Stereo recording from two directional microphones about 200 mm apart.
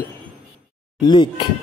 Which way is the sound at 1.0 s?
25° left (ahead or behind).